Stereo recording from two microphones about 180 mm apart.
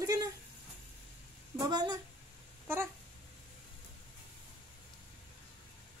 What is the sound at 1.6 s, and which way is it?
Speech, 25° right (ahead or behind).